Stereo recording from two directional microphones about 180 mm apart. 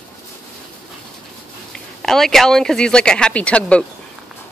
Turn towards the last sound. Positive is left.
turn(degrees=5)  # may be behind; listen again after turning